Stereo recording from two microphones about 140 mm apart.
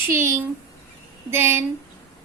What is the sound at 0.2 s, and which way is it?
A woman's voice, 20° right (ahead or behind).